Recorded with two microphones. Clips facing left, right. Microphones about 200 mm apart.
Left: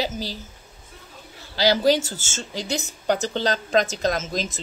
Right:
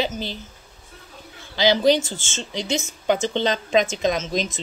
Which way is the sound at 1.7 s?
5° left (ahead or behind).